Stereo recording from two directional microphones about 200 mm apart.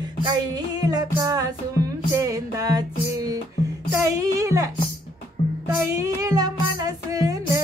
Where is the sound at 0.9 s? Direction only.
20° right (ahead or behind).